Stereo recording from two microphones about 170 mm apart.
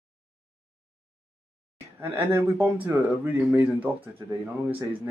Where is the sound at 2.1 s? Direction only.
10° right (ahead or behind).